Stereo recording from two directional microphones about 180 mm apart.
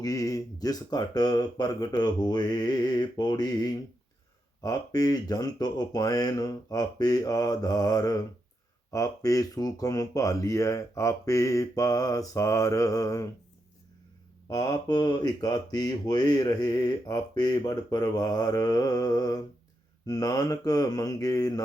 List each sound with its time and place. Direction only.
0.0 s speech: 20° left (ahead or behind)
14.5 s speech: 20° left (ahead or behind)